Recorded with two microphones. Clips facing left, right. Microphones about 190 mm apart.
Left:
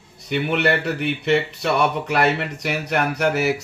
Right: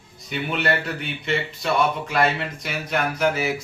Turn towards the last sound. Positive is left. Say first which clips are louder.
# left 2 dB
turn(degrees=65)  # may be behind; listen again after turning